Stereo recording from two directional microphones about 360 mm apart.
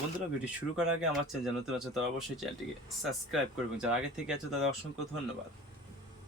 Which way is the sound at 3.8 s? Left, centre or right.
Centre.